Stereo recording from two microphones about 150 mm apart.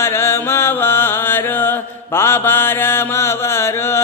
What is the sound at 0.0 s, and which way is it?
Chant, 15° left (ahead or behind).